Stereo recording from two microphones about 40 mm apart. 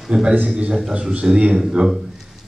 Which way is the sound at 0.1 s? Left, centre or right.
Right.